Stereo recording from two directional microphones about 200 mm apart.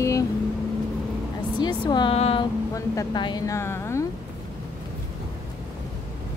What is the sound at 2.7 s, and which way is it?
A woman's voice, 20° left (ahead or behind).